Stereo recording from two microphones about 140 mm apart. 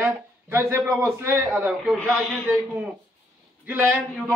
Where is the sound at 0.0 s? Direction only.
15° right (ahead or behind).